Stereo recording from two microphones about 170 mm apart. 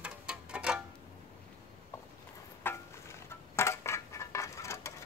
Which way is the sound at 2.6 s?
15° left (ahead or behind).